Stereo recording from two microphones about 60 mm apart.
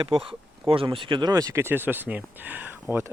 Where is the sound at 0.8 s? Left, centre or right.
Right.